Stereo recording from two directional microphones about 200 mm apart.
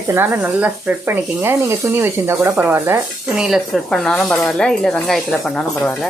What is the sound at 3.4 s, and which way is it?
Speech, centre (ahead or behind).